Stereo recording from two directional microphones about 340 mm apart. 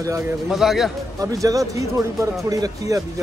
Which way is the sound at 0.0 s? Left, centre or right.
Centre.